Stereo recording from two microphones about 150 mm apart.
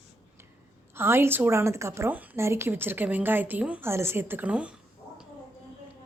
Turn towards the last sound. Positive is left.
turn(degrees=-10)  # may be behind; listen again after turning